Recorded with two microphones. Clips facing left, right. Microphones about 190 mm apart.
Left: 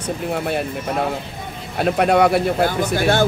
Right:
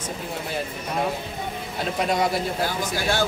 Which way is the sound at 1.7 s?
60° left (ahead or behind).